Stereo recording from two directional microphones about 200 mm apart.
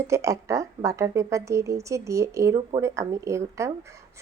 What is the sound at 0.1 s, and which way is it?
A woman's voice, 15° right (ahead or behind).